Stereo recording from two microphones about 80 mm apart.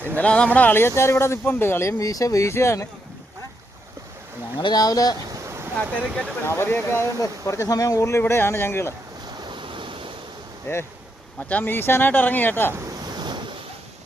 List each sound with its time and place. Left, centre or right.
0.2 s speech: centre; by 2.8 s left
4.6 s speech: left
5.3 s vehicle: right
5.8 s speech: centre
6.4 s speech: left
7.2 s speech: left
9.2 s waves: right
10.7 s speech: left
13.1 s waves: right